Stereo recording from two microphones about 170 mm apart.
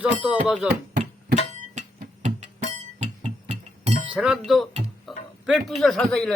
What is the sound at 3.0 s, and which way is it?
Music, 40° right (ahead or behind).